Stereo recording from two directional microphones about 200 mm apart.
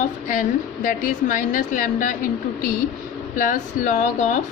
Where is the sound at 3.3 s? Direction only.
40° left (ahead or behind).